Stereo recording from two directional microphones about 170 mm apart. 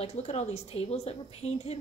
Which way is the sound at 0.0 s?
40° left (ahead or behind).